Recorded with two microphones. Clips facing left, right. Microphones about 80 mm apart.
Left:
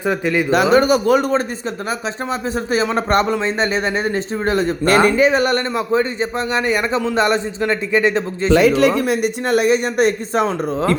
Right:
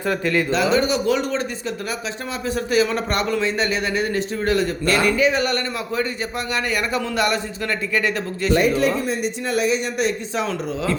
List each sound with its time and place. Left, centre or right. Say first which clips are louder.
0.0 s speech: left 3 dB; centre
0.5 s speech: left 8 dB; left
2.6 s speech: left 2 dB; left
8.5 s speech: left 6 dB; left